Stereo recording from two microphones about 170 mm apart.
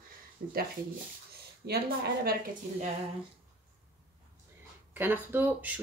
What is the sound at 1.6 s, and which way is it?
Speech, 75° right (ahead or behind).